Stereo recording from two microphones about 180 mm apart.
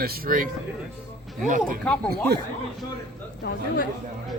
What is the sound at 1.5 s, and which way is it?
Speech, 45° right (ahead or behind).